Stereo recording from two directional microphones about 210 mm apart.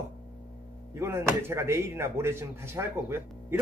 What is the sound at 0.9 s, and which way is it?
Speech, 10° right (ahead or behind).